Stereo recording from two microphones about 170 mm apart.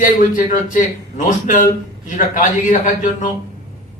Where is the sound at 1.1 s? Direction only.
50° left (ahead or behind).